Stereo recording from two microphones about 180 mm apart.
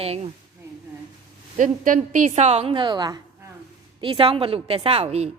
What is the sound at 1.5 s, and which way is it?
A woman's voice, 45° right (ahead or behind).